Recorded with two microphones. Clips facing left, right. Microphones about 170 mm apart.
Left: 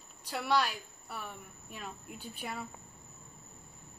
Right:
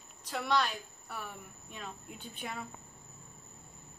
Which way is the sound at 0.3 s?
10° left (ahead or behind).